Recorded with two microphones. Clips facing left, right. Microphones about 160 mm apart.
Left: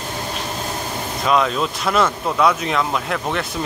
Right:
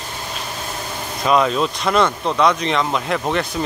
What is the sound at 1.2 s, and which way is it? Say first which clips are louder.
Speech: right 2 dB; centre (ahead or behind).